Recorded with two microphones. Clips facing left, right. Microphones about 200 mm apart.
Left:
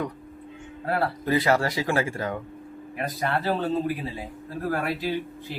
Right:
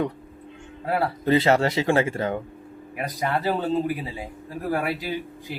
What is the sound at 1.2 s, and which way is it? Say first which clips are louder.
Speech: right 4 dB; 25° right (ahead or behind).